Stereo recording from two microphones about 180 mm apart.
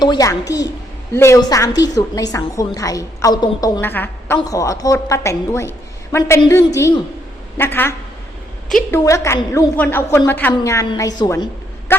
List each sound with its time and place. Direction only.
0.0 s a woman's voice: 20° left (ahead or behind)
7.6 s a woman's voice: 10° left (ahead or behind)
11.9 s vehicle: 15° left (ahead or behind)